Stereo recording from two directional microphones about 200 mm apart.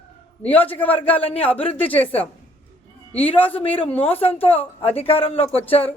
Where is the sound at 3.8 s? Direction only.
30° left (ahead or behind).